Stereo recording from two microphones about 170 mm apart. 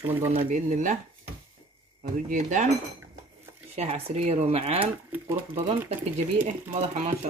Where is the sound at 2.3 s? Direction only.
45° right (ahead or behind).